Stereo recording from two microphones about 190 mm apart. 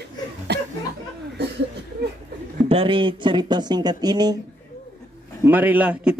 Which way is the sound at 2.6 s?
30° right (ahead or behind).